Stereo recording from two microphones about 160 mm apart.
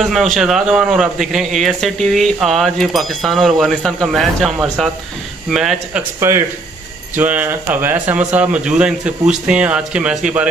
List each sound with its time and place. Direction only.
0.1 s a man's voice: centre (ahead or behind)
6.1 s speech: 15° right (ahead or behind)